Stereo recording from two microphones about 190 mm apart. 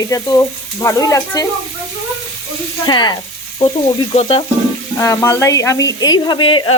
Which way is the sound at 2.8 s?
25° left (ahead or behind).